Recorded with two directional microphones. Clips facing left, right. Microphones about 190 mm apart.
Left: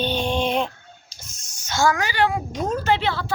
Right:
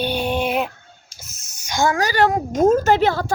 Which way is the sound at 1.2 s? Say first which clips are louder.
Right 1 dB; 5° right (ahead or behind).